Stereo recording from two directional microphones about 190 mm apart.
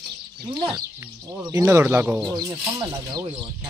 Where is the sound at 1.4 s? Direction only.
15° right (ahead or behind).